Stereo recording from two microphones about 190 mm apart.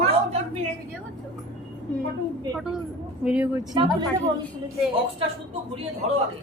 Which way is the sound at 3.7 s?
20° right (ahead or behind).